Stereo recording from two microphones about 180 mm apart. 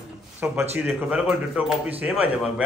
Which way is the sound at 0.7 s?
5° right (ahead or behind).